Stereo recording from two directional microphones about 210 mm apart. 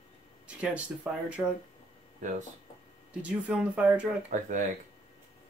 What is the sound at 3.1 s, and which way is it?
Speech, 5° right (ahead or behind).